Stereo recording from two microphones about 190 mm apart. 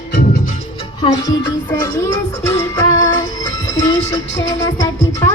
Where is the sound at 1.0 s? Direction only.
20° left (ahead or behind).